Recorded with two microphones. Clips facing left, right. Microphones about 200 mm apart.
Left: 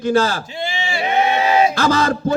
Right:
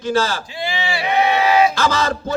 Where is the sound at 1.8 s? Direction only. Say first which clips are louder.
Left 3 dB; 55° left (ahead or behind).